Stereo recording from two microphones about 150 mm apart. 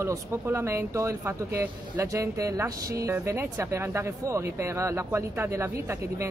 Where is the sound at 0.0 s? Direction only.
20° right (ahead or behind).